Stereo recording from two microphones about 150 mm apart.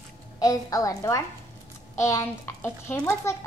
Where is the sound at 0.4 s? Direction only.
25° left (ahead or behind).